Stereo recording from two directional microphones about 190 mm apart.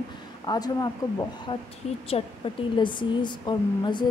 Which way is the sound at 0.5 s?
20° left (ahead or behind).